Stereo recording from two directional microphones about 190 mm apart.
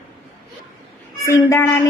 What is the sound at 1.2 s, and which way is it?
Speech, 15° left (ahead or behind).